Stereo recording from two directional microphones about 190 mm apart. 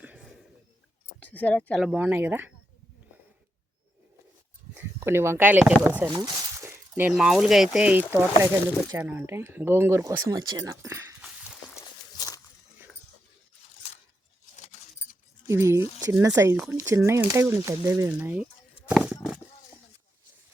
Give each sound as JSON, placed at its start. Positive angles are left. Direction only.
{"t": 0.0, "sound": "a sound", "side_deg": -10}
{"t": 1.2, "sound": "speech", "side_deg": 5}
{"t": 1.9, "sound": "speech", "side_deg": -10}
{"t": 4.9, "sound": "speech", "side_deg": -15}
{"t": 6.1, "sound": "a sound", "side_deg": -15}
{"t": 7.1, "sound": "speech", "side_deg": 0}
{"t": 11.8, "sound": "walk", "side_deg": 20}
{"t": 14.5, "sound": "keys jangling", "side_deg": 40}
{"t": 15.4, "sound": "speech", "side_deg": -15}
{"t": 18.9, "sound": "a sound", "side_deg": -5}